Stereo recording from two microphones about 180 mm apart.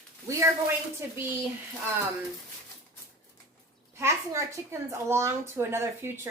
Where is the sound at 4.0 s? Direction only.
15° right (ahead or behind).